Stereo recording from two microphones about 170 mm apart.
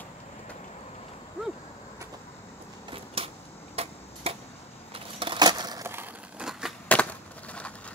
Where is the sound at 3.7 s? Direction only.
35° right (ahead or behind).